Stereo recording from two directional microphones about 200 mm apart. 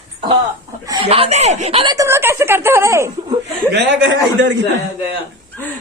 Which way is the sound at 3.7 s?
65° right (ahead or behind).